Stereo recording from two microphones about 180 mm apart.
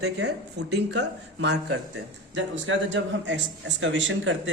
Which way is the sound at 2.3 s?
90° right.